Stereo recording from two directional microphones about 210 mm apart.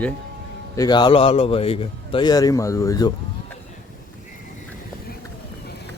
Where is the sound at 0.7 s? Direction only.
20° left (ahead or behind).